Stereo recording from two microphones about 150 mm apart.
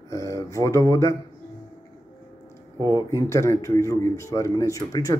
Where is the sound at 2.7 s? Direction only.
25° right (ahead or behind).